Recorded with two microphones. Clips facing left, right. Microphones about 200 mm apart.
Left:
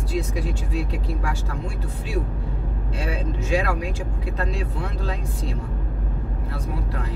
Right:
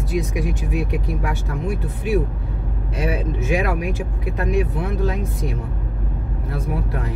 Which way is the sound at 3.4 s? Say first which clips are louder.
Right 2 dB; 20° right (ahead or behind).